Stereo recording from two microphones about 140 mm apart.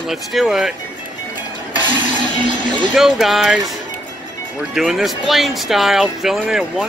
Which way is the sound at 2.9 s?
Centre (ahead or behind).